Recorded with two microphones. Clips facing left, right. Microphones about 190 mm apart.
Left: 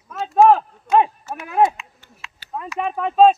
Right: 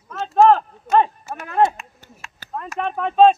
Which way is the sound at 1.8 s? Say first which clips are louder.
Right 1 dB; 45° right (ahead or behind).